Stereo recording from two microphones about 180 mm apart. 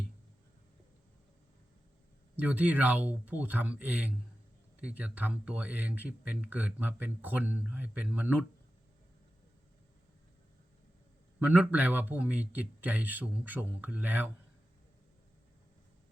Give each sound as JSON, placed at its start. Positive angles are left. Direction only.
{"t": 2.3, "sound": "speech", "side_deg": -10}
{"t": 11.3, "sound": "speech", "side_deg": -10}